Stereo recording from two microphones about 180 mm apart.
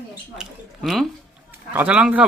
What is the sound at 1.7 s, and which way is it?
Speech, 10° right (ahead or behind).